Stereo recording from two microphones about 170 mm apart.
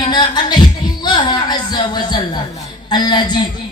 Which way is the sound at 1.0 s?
25° left (ahead or behind).